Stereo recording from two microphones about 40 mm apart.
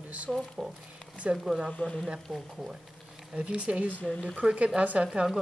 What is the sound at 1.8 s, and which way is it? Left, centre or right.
Speech, left.